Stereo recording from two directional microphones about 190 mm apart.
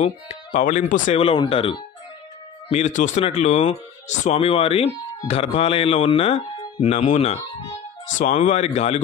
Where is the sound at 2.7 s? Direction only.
40° left (ahead or behind).